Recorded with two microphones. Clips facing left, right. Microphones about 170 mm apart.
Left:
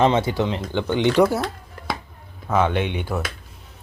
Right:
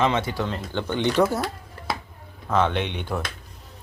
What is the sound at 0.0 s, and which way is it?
Speech, 30° left (ahead or behind).